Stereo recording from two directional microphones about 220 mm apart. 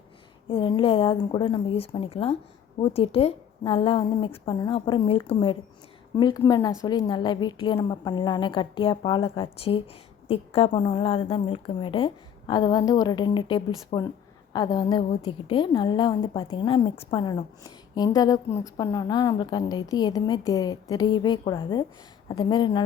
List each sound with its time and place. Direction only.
0.4 s a woman's voice: 25° left (ahead or behind)